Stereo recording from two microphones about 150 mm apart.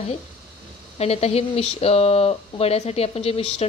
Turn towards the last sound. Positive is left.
turn(degrees=40)  # may be behind; listen again after turning